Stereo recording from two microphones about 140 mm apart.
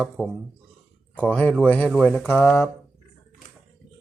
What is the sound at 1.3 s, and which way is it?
Speech, 10° left (ahead or behind).